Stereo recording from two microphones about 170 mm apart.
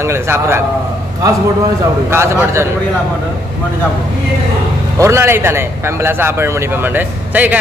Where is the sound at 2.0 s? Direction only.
15° right (ahead or behind).